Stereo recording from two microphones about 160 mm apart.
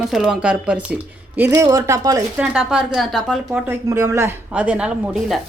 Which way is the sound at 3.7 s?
20° right (ahead or behind).